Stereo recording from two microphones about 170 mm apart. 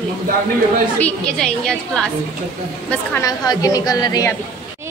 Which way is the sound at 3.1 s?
20° left (ahead or behind).